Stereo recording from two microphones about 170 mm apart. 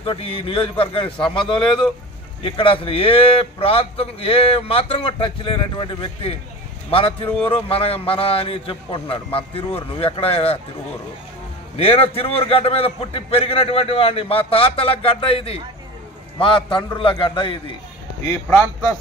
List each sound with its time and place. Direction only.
0.0 s a man's voice: 30° left (ahead or behind)
2.4 s a man's voice: 30° left (ahead or behind)
11.7 s a man's voice: 35° left (ahead or behind)